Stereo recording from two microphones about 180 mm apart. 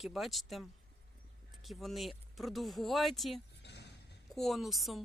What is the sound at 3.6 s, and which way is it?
Vehicle, 70° left (ahead or behind).